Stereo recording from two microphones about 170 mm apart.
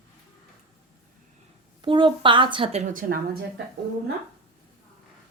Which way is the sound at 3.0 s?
55° right (ahead or behind).